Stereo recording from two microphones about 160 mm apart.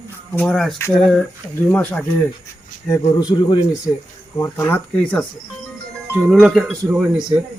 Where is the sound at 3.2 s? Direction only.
25° left (ahead or behind).